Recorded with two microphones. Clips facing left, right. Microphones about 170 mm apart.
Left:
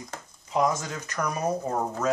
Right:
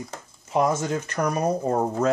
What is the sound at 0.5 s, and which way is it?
Speech, 25° right (ahead or behind).